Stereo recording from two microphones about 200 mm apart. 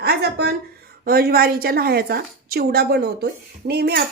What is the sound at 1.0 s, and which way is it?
Speech, 50° right (ahead or behind).